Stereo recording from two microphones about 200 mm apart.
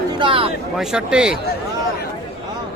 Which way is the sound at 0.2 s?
25° right (ahead or behind).